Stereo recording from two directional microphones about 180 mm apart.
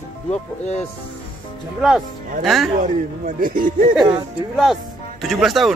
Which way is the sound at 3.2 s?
50° right (ahead or behind).